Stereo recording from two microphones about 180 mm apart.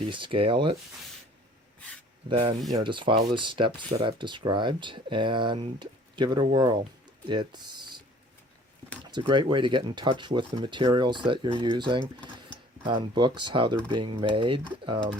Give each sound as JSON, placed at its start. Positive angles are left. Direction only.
{"t": 0.0, "sound": "speech", "side_deg": -30}
{"t": 2.3, "sound": "speech", "side_deg": -30}
{"t": 9.0, "sound": "speech", "side_deg": -25}